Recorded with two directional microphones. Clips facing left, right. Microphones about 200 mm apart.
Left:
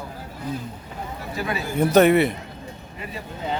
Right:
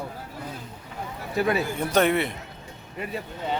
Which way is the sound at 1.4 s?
55° right (ahead or behind).